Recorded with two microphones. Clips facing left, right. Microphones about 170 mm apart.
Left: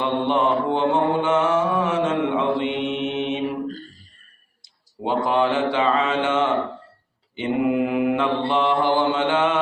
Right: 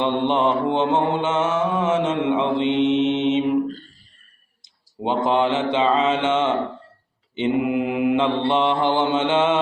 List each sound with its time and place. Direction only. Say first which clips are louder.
0.0 s mantra: right 1 dB; 20° right (ahead or behind)
3.7 s a sound: even; 40° left (ahead or behind)
4.9 s speech: right 1 dB; 20° right (ahead or behind)
7.3 s mantra: even; 20° right (ahead or behind)
8.4 s speech: right 1 dB; 20° right (ahead or behind)